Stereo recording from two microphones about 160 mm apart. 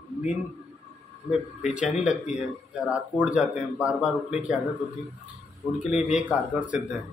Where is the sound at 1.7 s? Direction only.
5° right (ahead or behind).